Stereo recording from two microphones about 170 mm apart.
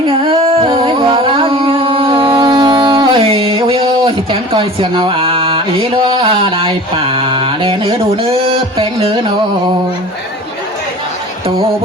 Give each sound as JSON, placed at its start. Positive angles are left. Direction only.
{"t": 0.3, "sound": "music", "side_deg": -30}